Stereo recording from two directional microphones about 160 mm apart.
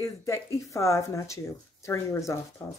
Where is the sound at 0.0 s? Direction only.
20° left (ahead or behind).